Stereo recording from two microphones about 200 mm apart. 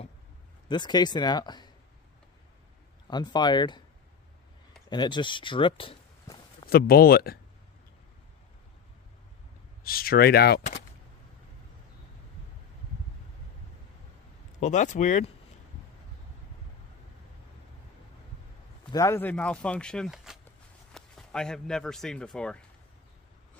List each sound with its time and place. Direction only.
0.7 s speech: 20° left (ahead or behind)
3.1 s speech: 20° left (ahead or behind)
4.8 s walk: 20° left (ahead or behind)
6.7 s speech: 50° left (ahead or behind)
9.8 s speech: 50° left (ahead or behind)
14.6 s speech: 35° left (ahead or behind)
18.9 s speech: 15° left (ahead or behind)